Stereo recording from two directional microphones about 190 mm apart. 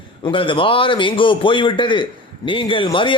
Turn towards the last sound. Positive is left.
turn(degrees=25)  # may be behind; listen again after turning